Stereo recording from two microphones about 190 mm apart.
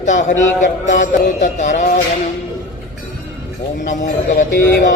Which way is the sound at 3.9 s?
40° left (ahead or behind).